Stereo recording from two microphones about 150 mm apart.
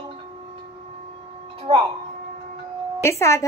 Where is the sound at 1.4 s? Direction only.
35° right (ahead or behind).